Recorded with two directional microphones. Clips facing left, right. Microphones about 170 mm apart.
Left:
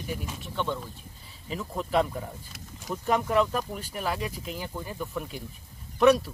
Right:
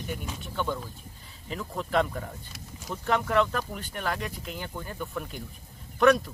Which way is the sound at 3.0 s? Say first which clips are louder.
Left 1 dB; 10° left (ahead or behind).